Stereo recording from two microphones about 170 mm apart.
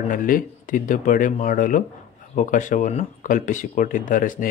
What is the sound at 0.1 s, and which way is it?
Speech, 55° left (ahead or behind).